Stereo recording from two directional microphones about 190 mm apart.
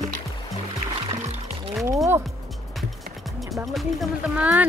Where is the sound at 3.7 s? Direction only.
5° right (ahead or behind).